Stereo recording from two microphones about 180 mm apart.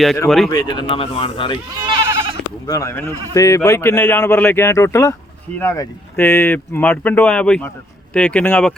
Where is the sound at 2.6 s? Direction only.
15° left (ahead or behind).